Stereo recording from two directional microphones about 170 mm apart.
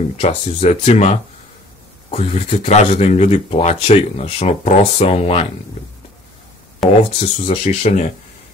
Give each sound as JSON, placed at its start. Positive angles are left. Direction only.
{"t": 0.2, "sound": "speech", "side_deg": 40}
{"t": 6.8, "sound": "speech", "side_deg": 0}
{"t": 7.2, "sound": "speech", "side_deg": 40}